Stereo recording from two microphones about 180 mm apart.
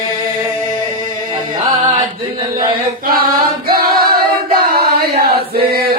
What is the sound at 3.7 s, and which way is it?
Singing, 55° right (ahead or behind).